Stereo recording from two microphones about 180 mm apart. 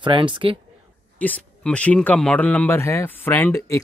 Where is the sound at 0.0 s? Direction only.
25° right (ahead or behind).